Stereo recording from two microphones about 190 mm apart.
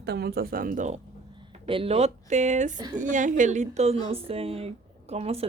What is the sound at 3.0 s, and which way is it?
Speech, 40° right (ahead or behind).